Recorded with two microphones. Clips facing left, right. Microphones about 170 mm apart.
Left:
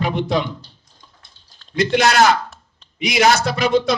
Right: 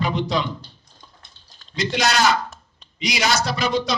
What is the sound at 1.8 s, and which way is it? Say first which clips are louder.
A man's voice: left 6 dB; 55° left (ahead or behind).